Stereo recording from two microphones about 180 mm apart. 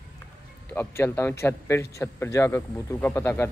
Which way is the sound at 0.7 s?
10° left (ahead or behind).